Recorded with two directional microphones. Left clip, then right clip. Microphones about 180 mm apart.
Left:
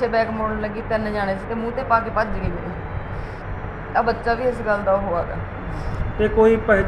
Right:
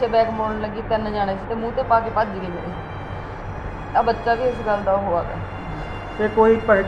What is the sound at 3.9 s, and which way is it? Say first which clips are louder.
A woman's voice: right 1 dB; 10° left (ahead or behind).